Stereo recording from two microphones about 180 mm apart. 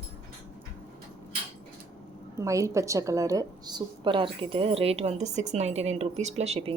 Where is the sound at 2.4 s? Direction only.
15° right (ahead or behind).